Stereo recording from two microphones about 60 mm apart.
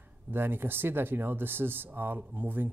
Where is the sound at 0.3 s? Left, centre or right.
Right.